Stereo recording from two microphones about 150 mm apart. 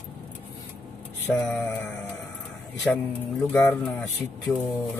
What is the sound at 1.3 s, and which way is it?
Speech, 10° left (ahead or behind).